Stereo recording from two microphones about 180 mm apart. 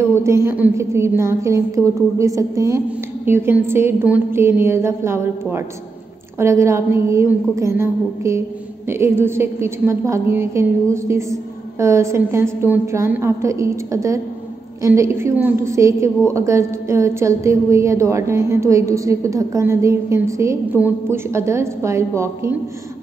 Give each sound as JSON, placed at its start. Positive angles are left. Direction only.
{"t": 0.1, "sound": "a woman's voice", "side_deg": -15}